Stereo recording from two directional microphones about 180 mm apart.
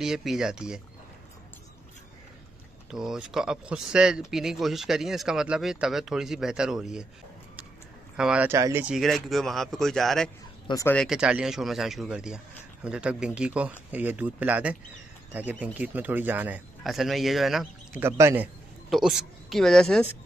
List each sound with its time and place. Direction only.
0.0 s speech: centre (ahead or behind)
2.9 s speech: 5° right (ahead or behind)
8.2 s speech: 5° right (ahead or behind)
8.9 s speech: centre (ahead or behind)
10.7 s speech: 15° left (ahead or behind)
11.0 s speech: 5° right (ahead or behind)
18.0 s speech: 15° right (ahead or behind)
18.9 s speech: centre (ahead or behind)